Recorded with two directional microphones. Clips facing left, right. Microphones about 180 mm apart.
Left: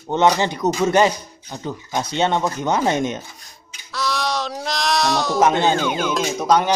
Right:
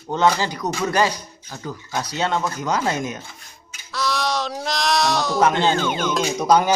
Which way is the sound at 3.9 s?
Centre (ahead or behind).